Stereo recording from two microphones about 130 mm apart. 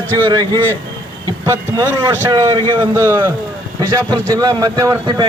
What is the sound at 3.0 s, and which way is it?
A man's voice, 20° right (ahead or behind).